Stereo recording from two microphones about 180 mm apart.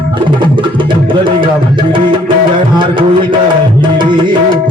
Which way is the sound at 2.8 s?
25° right (ahead or behind).